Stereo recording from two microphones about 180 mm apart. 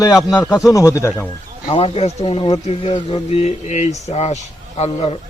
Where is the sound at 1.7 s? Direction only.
35° left (ahead or behind).